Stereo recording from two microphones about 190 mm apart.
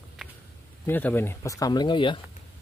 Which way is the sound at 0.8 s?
10° left (ahead or behind).